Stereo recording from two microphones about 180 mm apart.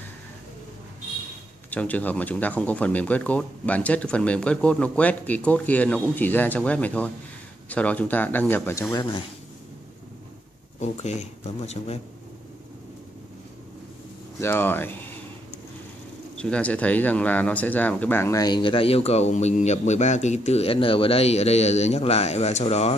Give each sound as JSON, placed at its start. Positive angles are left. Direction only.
{"t": 1.7, "sound": "speech", "side_deg": 10}
{"t": 10.8, "sound": "speech", "side_deg": 40}
{"t": 14.4, "sound": "speech", "side_deg": 15}
{"t": 16.3, "sound": "speech", "side_deg": 5}